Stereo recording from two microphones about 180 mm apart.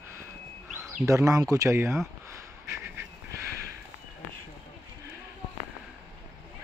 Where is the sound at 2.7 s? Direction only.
15° right (ahead or behind).